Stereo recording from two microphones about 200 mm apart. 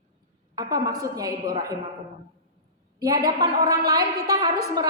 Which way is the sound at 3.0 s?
20° right (ahead or behind).